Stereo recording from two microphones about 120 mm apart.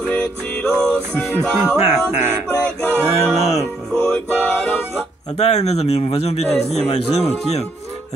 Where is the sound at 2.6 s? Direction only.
15° left (ahead or behind).